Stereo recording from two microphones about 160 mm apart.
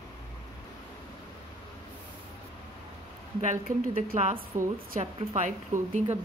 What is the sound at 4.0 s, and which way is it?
Speech, 50° right (ahead or behind).